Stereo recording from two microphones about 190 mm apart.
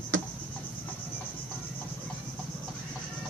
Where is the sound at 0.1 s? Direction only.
85° right.